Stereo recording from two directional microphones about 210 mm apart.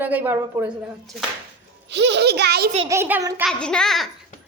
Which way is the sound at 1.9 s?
55° right (ahead or behind).